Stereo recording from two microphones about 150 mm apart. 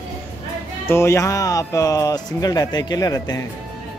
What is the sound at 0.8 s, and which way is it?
Speech, 15° left (ahead or behind).